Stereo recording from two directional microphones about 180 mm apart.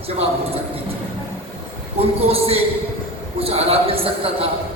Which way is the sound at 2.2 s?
35° right (ahead or behind).